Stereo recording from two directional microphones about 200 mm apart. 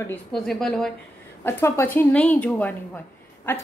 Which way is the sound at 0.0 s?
5° left (ahead or behind).